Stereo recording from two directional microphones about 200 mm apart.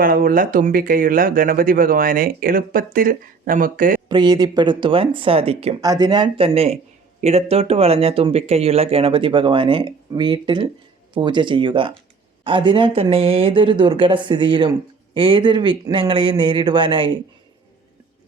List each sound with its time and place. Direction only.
0.0 s speech: 45° right (ahead or behind)
4.1 s speech: 20° right (ahead or behind)
5.8 s speech: 20° right (ahead or behind)